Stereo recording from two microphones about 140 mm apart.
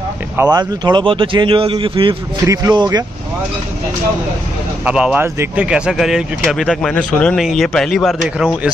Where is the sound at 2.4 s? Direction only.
25° right (ahead or behind).